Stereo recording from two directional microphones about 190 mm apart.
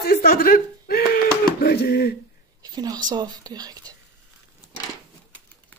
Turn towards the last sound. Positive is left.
turn(degrees=-20)  # may be behind; listen again after turning